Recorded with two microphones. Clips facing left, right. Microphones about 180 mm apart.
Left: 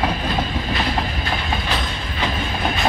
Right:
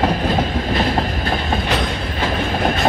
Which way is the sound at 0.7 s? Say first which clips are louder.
Right 5 dB; 45° right (ahead or behind).